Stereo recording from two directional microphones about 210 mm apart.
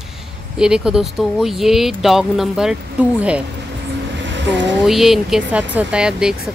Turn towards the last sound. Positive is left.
turn(degrees=-5)  # may be behind; listen again after turning